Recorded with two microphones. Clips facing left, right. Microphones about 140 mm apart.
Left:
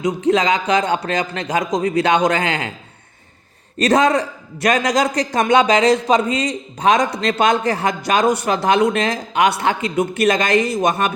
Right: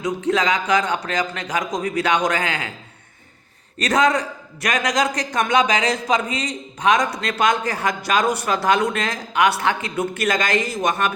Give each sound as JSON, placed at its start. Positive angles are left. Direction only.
{"t": 0.0, "sound": "a man's voice", "side_deg": 25}
{"t": 3.8, "sound": "a man's voice", "side_deg": 30}